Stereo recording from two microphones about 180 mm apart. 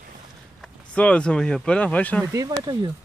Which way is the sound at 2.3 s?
20° right (ahead or behind).